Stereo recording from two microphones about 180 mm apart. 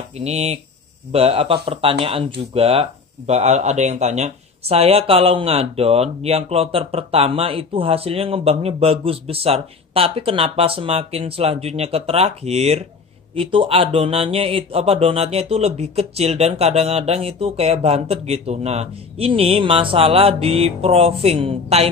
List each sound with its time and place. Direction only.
0.2 s speech: 35° right (ahead or behind)